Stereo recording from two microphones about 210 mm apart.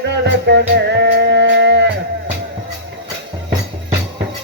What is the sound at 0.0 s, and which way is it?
Music, 55° right (ahead or behind).